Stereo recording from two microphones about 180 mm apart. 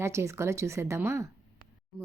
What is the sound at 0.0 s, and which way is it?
Speech, 15° right (ahead or behind).